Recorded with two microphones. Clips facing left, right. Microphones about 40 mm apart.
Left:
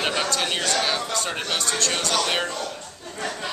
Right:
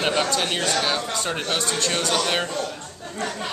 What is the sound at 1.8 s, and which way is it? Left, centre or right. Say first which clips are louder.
Speech: right 1 dB; right.